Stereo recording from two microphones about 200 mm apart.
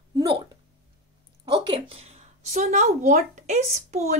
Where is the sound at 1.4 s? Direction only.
25° right (ahead or behind).